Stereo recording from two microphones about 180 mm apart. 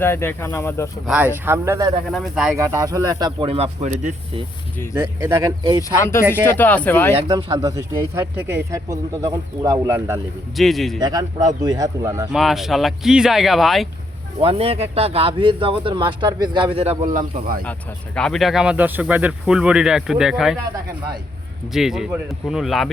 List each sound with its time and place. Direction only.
0.0 s speech: 15° left (ahead or behind)
1.0 s speech: 5° right (ahead or behind)
2.0 s speech: centre (ahead or behind)
2.6 s speech: 15° right (ahead or behind); by 4.1 s 40° right (ahead or behind)
4.9 s speech: 20° right (ahead or behind)
6.0 s speech: 15° left (ahead or behind)
7.3 s speech: 20° right (ahead or behind)
10.6 s speech: centre (ahead or behind)
11.0 s speech: 20° right (ahead or behind)
12.3 s speech: centre (ahead or behind)
14.3 s speech: 30° right (ahead or behind)
17.7 s speech: 5° left (ahead or behind)
21.7 s speech: centre (ahead or behind)